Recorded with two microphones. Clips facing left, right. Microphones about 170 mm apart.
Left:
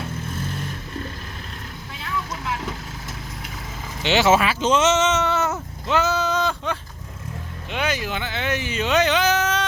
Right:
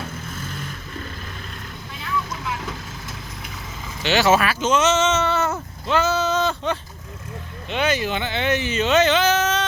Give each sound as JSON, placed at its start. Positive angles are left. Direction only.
{"t": 4.0, "sound": "speech", "side_deg": 20}